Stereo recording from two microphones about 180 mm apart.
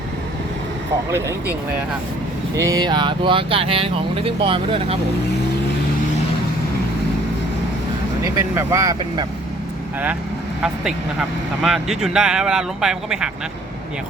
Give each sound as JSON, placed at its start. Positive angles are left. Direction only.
{"t": 2.6, "sound": "speech", "side_deg": -20}
{"t": 8.4, "sound": "speech", "side_deg": -15}
{"t": 10.6, "sound": "speech", "side_deg": -5}